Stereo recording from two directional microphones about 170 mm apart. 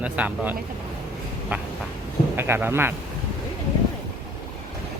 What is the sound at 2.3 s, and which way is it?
Speech, 10° right (ahead or behind).